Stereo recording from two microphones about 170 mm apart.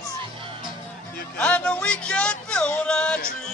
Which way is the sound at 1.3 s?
5° left (ahead or behind).